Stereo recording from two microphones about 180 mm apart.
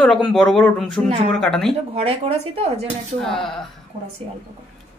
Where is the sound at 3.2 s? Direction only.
Centre (ahead or behind).